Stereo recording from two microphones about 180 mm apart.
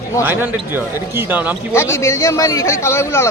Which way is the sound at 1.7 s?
15° left (ahead or behind).